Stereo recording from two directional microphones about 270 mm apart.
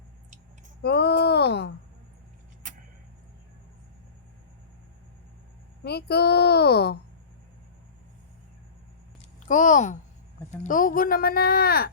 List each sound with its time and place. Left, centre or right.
0.8 s speech: left
5.8 s speech: left
9.5 s speech: left